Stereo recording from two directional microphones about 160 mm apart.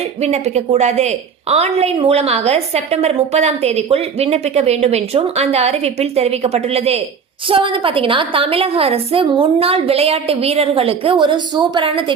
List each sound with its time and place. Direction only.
0.2 s a woman's voice: 40° right (ahead or behind)